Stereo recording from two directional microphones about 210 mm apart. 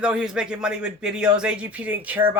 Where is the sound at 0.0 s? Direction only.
5° right (ahead or behind).